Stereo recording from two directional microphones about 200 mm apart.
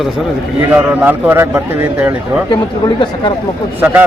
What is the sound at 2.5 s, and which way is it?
Speech, 25° left (ahead or behind).